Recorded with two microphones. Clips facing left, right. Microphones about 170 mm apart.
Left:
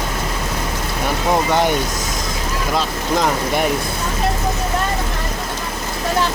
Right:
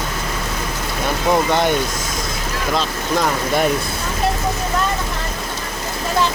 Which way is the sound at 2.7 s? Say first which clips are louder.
Even; 15° left (ahead or behind).